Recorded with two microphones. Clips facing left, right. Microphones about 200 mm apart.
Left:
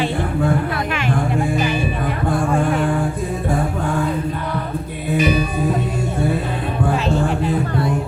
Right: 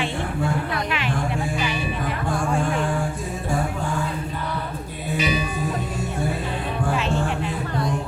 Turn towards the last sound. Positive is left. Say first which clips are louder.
# left 5 dB
turn(degrees=35)  # may be behind; listen again after turning